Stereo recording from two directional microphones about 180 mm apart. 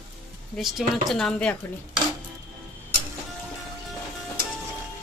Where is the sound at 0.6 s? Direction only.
Centre (ahead or behind).